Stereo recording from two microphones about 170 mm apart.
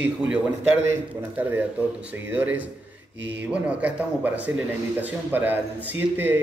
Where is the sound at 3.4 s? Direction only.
10° right (ahead or behind).